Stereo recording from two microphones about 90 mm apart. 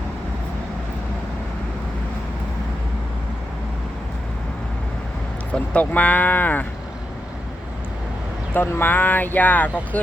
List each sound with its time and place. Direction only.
5.7 s speech: 15° left (ahead or behind)
8.5 s speech: 25° left (ahead or behind)